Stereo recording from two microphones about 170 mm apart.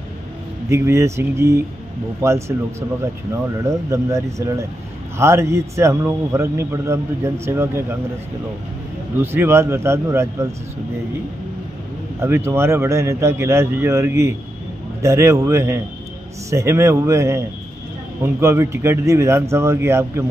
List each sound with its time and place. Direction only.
0.7 s speech: 15° right (ahead or behind)
3.6 s speech: 20° right (ahead or behind)
9.2 s speech: 15° right (ahead or behind)
12.2 s speech: 15° right (ahead or behind)